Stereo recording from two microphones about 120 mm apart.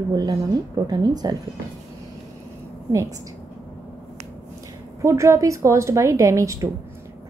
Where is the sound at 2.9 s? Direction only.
25° right (ahead or behind).